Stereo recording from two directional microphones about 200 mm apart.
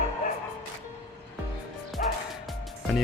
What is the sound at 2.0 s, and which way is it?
Music, 40° left (ahead or behind).